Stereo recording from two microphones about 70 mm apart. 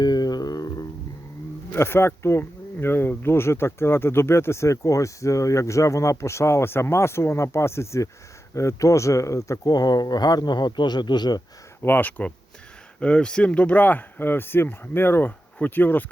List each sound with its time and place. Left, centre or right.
0.0 s a sound: left
1.7 s speech: left
9.6 s speech: left
11.8 s speech: left
13.0 s speech: centre